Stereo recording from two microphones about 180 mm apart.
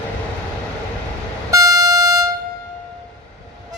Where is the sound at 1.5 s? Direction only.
20° right (ahead or behind).